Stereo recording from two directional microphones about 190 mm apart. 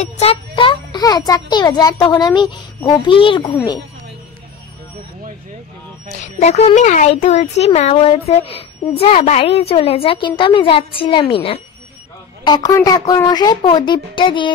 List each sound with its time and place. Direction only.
0.0 s a child's voice: 30° left (ahead or behind)
6.4 s a child's voice: 35° left (ahead or behind)